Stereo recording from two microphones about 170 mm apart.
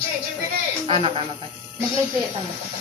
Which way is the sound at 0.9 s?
35° right (ahead or behind).